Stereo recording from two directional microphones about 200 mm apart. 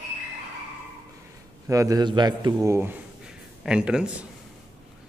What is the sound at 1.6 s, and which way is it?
A man's voice, 15° right (ahead or behind).